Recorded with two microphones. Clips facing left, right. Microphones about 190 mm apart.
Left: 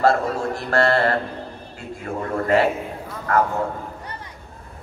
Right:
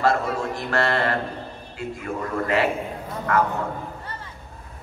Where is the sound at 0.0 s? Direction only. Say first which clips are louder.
Left 3 dB; 40° left (ahead or behind).